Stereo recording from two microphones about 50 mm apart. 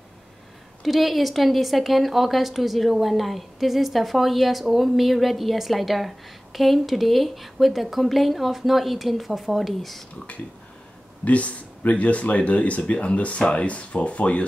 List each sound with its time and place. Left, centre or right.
0.8 s a woman's voice: centre
10.1 s speech: left